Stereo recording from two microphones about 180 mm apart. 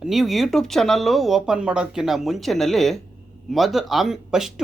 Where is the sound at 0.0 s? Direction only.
Centre (ahead or behind).